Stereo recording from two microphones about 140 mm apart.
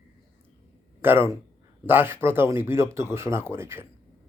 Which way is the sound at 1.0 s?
15° right (ahead or behind).